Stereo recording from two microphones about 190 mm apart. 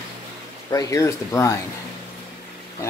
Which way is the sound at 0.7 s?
15° left (ahead or behind).